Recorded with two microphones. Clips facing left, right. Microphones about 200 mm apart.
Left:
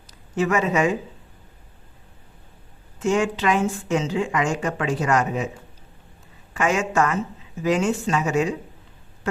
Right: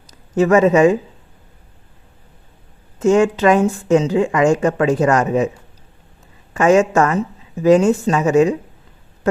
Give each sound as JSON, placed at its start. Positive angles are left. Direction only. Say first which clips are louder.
{"t": 0.1, "sound": "speech", "louder": "right 9 dB", "side_deg": -40}
{"t": 3.0, "sound": "speech", "louder": "right 8 dB", "side_deg": -45}
{"t": 6.5, "sound": "speech", "louder": "right 10 dB", "side_deg": -45}